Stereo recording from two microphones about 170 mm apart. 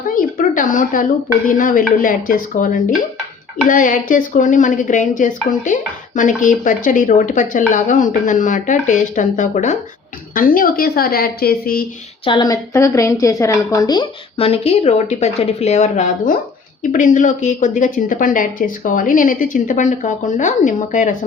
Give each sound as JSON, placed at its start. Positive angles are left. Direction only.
{"t": 0.1, "sound": "a sound", "side_deg": 55}
{"t": 1.5, "sound": "a woman's voice", "side_deg": 50}
{"t": 12.2, "sound": "a woman's voice", "side_deg": 25}